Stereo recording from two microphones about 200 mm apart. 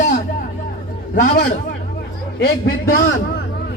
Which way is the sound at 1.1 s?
40° left (ahead or behind).